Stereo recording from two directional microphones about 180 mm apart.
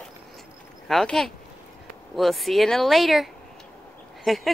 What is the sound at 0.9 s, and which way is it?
Speech, centre (ahead or behind).